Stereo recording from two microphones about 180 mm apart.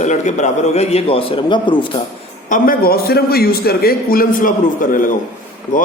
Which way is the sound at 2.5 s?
50° left (ahead or behind).